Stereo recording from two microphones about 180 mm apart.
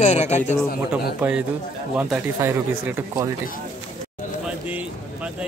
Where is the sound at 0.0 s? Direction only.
40° left (ahead or behind).